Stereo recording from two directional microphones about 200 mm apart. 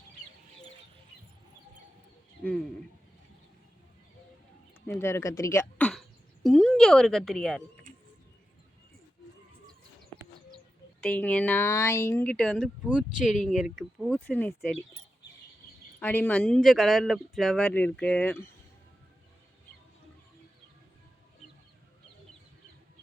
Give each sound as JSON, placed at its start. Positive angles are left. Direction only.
{"t": 4.9, "sound": "a sound", "side_deg": 10}
{"t": 11.0, "sound": "speech", "side_deg": 5}
{"t": 14.1, "sound": "speech", "side_deg": 10}
{"t": 16.0, "sound": "speech", "side_deg": 10}